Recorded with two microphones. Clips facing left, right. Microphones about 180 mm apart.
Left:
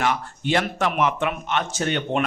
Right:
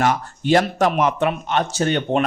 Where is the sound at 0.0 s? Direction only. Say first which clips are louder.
Right 4 dB; 40° right (ahead or behind).